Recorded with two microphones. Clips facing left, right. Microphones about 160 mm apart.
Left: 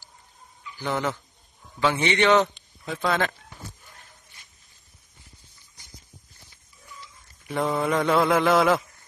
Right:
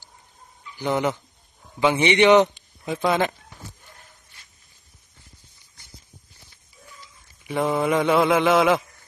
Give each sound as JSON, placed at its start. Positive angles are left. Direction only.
{"t": 0.7, "sound": "a man's voice", "side_deg": -15}
{"t": 7.4, "sound": "a man's voice", "side_deg": 0}